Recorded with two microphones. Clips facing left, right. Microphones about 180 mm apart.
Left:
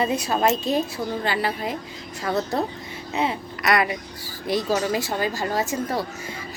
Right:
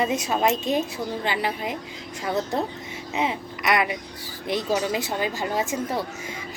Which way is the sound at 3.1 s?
10° right (ahead or behind).